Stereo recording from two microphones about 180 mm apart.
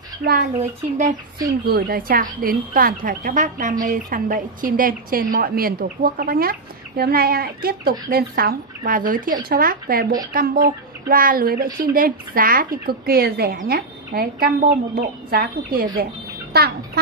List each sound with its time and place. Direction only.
0.2 s a woman's voice: 55° right (ahead or behind)
0.6 s a woman's voice: 45° right (ahead or behind)
1.7 s a woman's voice: 55° right (ahead or behind)